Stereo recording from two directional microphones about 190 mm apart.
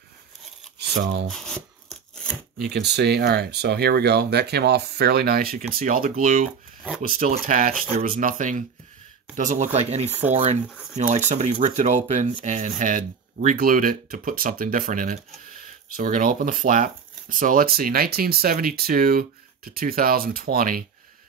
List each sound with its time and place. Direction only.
0.7 s crumpling: 60° right (ahead or behind)
1.3 s a sound: centre (ahead or behind)
2.7 s speech: 60° right (ahead or behind); by 10.6 s 35° right (ahead or behind)
10.7 s speech: centre (ahead or behind)
11.0 s speech: 40° right (ahead or behind)